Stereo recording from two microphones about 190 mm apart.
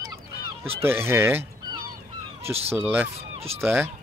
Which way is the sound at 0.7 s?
15° right (ahead or behind).